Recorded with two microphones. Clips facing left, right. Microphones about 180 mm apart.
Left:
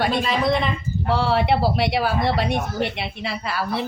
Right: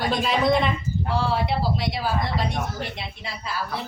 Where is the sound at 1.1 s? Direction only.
70° left (ahead or behind).